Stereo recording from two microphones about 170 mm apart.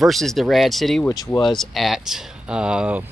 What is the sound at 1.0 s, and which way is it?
Speech, 20° left (ahead or behind).